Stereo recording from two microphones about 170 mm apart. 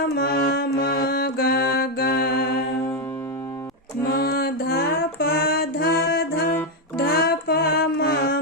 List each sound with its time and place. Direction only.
0.2 s music: 65° left (ahead or behind)
4.0 s music: 60° left (ahead or behind)